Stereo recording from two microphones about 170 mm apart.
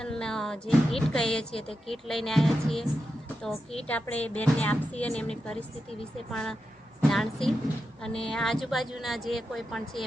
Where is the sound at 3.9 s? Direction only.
10° left (ahead or behind).